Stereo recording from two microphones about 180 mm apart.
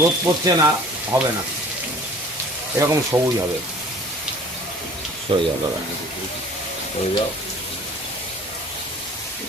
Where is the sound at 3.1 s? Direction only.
15° right (ahead or behind).